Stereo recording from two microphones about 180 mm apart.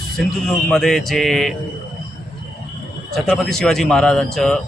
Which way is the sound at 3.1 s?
Centre (ahead or behind).